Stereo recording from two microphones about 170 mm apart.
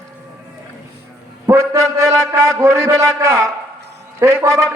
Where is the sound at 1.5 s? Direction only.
15° right (ahead or behind).